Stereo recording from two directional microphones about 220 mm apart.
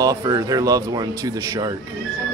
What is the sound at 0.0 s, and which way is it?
Speech, 15° right (ahead or behind).